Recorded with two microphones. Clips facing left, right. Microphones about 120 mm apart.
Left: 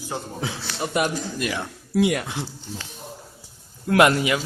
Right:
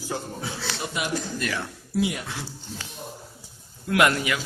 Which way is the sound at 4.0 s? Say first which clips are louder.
Left 4 dB; 25° left (ahead or behind).